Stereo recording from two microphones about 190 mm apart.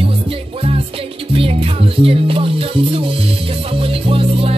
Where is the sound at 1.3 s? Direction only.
30° right (ahead or behind).